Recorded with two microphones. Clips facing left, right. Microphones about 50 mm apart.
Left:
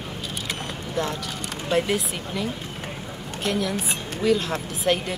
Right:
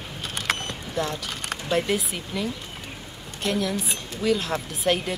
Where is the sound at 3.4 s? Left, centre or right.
Centre.